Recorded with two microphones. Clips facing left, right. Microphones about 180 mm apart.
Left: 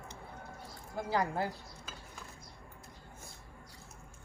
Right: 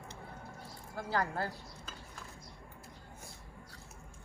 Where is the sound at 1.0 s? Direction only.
15° left (ahead or behind).